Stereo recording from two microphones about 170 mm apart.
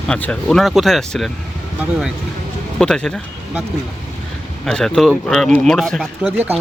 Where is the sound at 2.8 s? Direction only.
5° left (ahead or behind).